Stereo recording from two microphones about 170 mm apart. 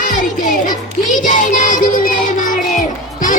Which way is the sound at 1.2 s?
50° left (ahead or behind).